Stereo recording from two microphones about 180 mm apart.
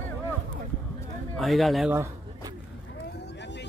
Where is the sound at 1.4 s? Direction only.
Centre (ahead or behind).